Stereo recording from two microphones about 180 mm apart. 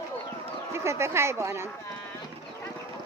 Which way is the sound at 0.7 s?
15° right (ahead or behind).